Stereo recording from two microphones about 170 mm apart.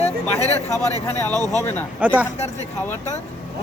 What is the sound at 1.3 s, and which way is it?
Speech, 20° right (ahead or behind).